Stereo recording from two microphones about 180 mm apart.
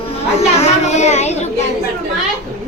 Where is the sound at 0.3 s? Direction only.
40° left (ahead or behind).